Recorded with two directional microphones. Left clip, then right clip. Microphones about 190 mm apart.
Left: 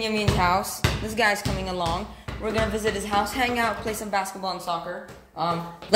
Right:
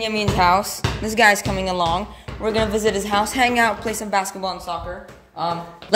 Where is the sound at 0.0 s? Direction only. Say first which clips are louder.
Right 5 dB; 40° right (ahead or behind).